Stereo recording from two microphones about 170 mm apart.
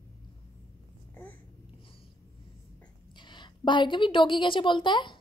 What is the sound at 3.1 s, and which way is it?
A woman's voice, 25° left (ahead or behind).